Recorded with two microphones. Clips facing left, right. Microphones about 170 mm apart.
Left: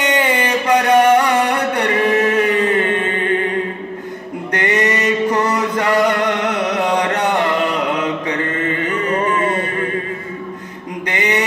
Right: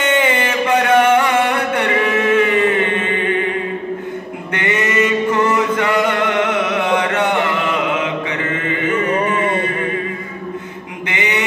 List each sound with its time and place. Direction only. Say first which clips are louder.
0.3 s music: left 1 dB; 40° left (ahead or behind)
4.5 s chant: left 2 dB; 40° left (ahead or behind)
11.1 s mantra: left 2 dB; 40° left (ahead or behind)